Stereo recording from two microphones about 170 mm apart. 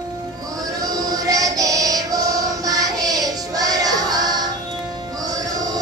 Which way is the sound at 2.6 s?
20° right (ahead or behind).